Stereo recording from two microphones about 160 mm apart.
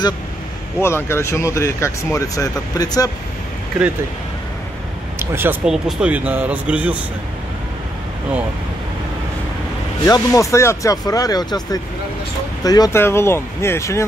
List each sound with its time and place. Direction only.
0.7 s speech: 15° left (ahead or behind)
5.2 s speech: 15° right (ahead or behind)
5.7 s speech: 5° right (ahead or behind)
10.0 s speech: 20° left (ahead or behind)